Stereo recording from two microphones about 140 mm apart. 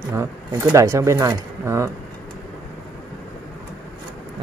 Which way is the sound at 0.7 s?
20° right (ahead or behind).